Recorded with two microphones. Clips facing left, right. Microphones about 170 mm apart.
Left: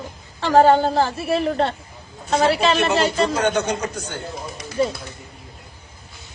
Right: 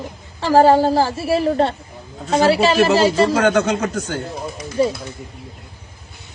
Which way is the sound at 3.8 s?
60° right (ahead or behind).